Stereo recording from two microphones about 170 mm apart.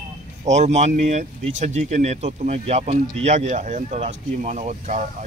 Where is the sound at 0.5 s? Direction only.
40° right (ahead or behind).